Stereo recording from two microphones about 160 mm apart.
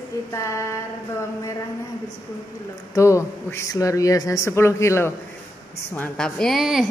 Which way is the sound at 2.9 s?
20° left (ahead or behind).